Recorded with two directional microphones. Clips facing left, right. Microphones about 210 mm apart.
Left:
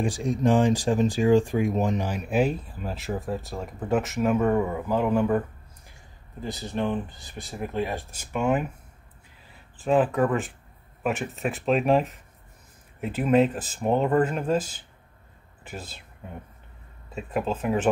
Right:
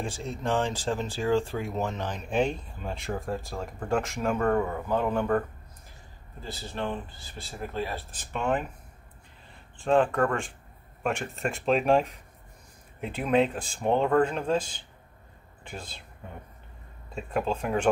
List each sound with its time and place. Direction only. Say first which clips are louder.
0.0 s speech: left 8 dB; 15° left (ahead or behind)
6.4 s speech: left 5 dB; 15° left (ahead or behind)
17.1 s speech: left 1 dB; 5° left (ahead or behind)